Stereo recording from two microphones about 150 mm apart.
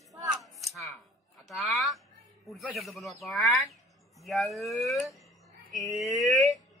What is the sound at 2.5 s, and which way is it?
Speech, centre (ahead or behind).